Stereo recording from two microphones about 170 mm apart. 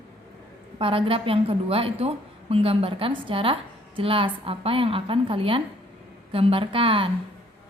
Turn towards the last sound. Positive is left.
turn(degrees=-30)  # may be behind; listen again after turning